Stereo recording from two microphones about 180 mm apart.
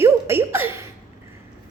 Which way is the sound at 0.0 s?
15° right (ahead or behind).